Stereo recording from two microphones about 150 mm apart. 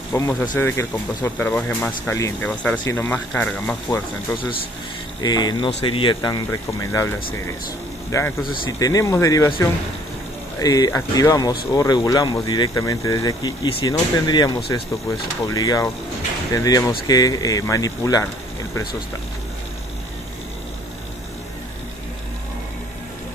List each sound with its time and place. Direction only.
0.1 s speech: 15° left (ahead or behind)
5.2 s speech: 25° left (ahead or behind)
8.1 s speech: 20° left (ahead or behind)